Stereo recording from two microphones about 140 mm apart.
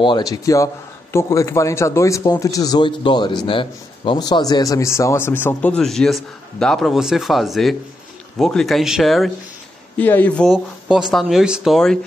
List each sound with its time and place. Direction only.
0.0 s a man's voice: 30° left (ahead or behind); by 9.3 s centre (ahead or behind)
9.9 s speech: 10° left (ahead or behind)
10.5 s speech: 5° right (ahead or behind)